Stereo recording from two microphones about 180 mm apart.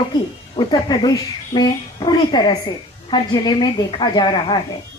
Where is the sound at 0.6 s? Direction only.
25° left (ahead or behind).